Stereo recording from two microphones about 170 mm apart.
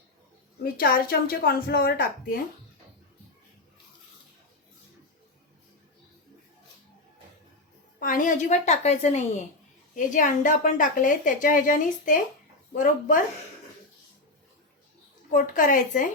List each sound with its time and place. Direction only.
0.6 s a woman's voice: 60° left (ahead or behind)
7.9 s a woman's voice: 55° left (ahead or behind)
15.3 s a woman's voice: 50° left (ahead or behind)